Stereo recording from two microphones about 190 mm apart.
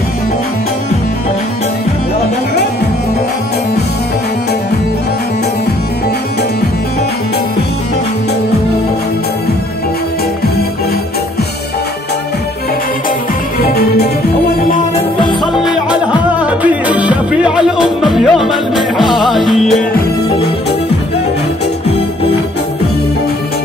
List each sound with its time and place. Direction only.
13.6 s music: 55° left (ahead or behind)
15.5 s music: 5° right (ahead or behind)